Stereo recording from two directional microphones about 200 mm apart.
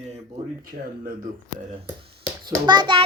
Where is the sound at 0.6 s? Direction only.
45° right (ahead or behind).